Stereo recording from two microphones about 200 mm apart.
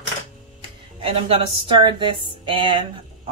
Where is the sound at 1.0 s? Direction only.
30° right (ahead or behind).